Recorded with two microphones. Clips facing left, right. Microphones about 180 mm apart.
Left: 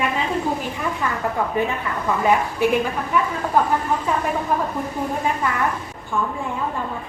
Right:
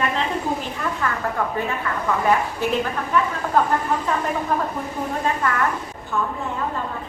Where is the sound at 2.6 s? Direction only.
15° left (ahead or behind).